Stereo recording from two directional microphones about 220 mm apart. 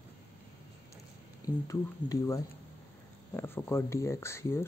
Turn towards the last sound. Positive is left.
turn(degrees=10)  # may be behind; listen again after turning